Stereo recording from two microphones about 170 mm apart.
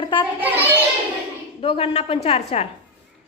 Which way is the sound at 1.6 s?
35° left (ahead or behind).